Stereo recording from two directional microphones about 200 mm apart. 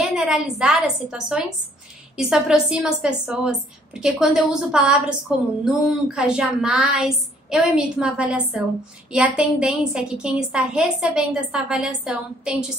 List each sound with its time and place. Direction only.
0.1 s a woman's voice: centre (ahead or behind)